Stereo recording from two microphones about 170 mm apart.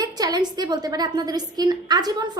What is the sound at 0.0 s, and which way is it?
A woman's voice, 25° right (ahead or behind).